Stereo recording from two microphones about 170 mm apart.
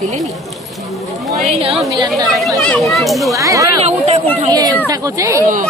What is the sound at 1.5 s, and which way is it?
Speech, 35° right (ahead or behind).